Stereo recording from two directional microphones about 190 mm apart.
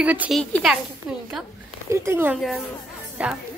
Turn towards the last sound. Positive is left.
turn(degrees=-5)  # may be behind; listen again after turning